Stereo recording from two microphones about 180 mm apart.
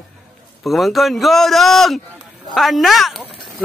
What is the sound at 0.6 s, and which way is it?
Speech, centre (ahead or behind).